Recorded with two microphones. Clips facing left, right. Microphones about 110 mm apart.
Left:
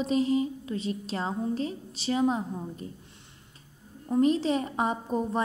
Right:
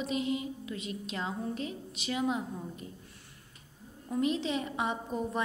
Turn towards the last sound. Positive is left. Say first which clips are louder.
# left 5 dB
turn(degrees=40)  # may be behind; listen again after turning